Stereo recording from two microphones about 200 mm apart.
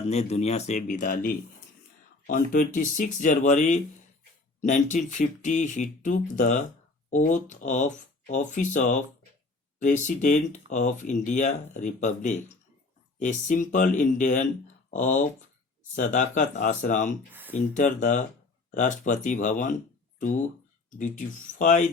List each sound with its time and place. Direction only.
0.1 s speech: 35° left (ahead or behind)